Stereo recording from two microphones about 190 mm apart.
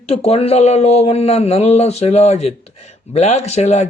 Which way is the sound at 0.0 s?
30° left (ahead or behind).